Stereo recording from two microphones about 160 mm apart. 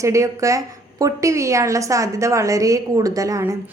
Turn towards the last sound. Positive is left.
turn(degrees=-20)  # may be behind; listen again after turning